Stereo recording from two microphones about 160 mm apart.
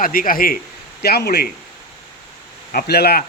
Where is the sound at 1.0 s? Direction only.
80° left.